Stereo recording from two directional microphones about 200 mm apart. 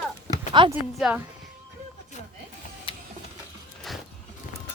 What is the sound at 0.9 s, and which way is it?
Speech, centre (ahead or behind).